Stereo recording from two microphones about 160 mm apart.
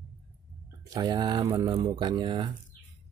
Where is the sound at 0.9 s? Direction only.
25° right (ahead or behind).